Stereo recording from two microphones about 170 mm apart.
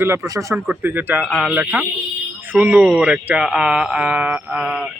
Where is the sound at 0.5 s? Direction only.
10° right (ahead or behind).